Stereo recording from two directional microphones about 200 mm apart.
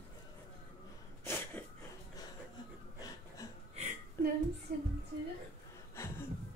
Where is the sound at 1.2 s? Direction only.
10° left (ahead or behind).